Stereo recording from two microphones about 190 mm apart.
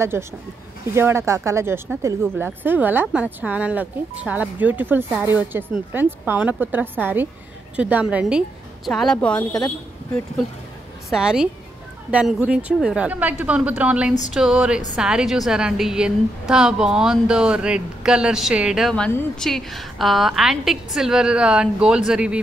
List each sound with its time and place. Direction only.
0.2 s a woman's voice: 15° right (ahead or behind); by 9.7 s 5° left (ahead or behind)
11.1 s a woman's voice: 5° right (ahead or behind)